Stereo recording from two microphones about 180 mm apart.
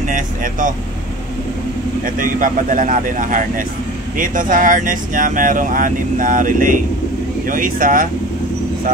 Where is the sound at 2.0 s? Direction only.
50° right (ahead or behind).